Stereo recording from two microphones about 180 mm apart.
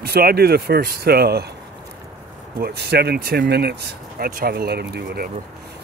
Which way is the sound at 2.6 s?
65° right (ahead or behind).